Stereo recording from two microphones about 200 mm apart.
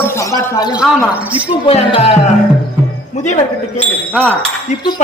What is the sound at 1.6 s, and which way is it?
Speech, 30° left (ahead or behind).